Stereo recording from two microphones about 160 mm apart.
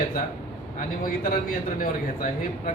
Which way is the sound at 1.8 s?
55° left (ahead or behind).